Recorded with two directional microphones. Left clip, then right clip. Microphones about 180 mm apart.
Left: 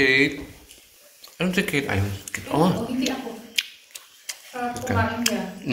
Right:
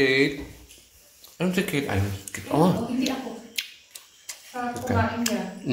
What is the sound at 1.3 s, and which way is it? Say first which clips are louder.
Speech: left 3 dB; 15° right (ahead or behind).